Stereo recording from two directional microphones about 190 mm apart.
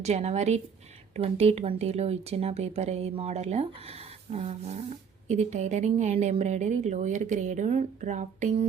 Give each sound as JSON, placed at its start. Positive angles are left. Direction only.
{"t": 0.0, "sound": "speech", "side_deg": -35}